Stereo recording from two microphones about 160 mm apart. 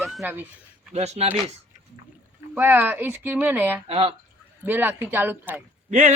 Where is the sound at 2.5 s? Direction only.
15° right (ahead or behind).